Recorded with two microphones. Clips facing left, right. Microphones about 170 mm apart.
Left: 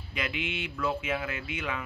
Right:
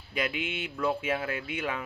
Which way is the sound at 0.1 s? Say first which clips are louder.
Right 2 dB; 40° right (ahead or behind).